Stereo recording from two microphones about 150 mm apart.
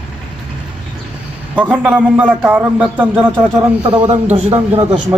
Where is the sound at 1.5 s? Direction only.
10° right (ahead or behind).